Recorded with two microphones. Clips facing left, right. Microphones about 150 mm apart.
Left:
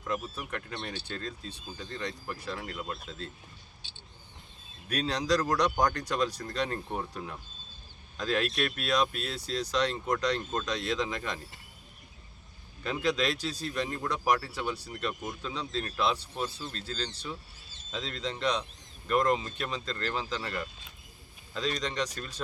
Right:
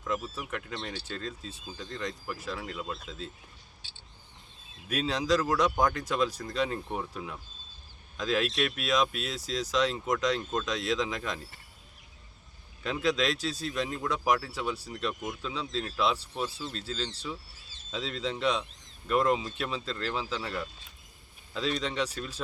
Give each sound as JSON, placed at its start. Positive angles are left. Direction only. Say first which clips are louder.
{"t": 0.4, "sound": "speech", "louder": "right 1 dB", "side_deg": 0}
{"t": 4.9, "sound": "speech", "louder": "right 1 dB", "side_deg": -5}
{"t": 12.8, "sound": "speech", "louder": "right 1 dB", "side_deg": 0}
{"t": 14.1, "sound": "speech", "louder": "even", "side_deg": -5}